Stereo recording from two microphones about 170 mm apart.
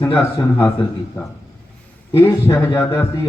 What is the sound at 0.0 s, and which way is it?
Speech, 15° left (ahead or behind).